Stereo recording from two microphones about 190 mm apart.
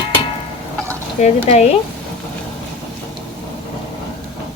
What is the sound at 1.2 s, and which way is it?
Speech, 35° left (ahead or behind).